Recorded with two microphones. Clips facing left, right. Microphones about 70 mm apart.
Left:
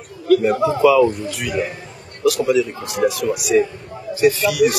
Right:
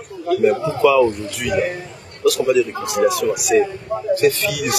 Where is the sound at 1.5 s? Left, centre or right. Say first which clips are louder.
Right 4 dB; right.